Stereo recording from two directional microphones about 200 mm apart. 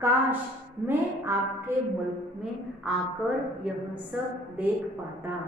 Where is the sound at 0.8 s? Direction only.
10° right (ahead or behind).